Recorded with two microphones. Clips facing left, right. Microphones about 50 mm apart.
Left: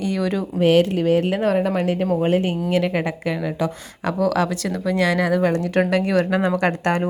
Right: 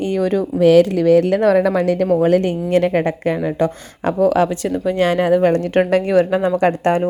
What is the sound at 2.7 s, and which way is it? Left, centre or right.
A woman's voice, right.